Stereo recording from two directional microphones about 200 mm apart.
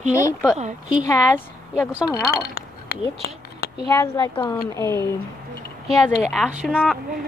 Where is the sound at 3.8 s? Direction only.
20° left (ahead or behind).